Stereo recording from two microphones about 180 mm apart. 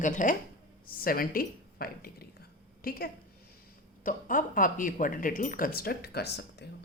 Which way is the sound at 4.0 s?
50° left (ahead or behind).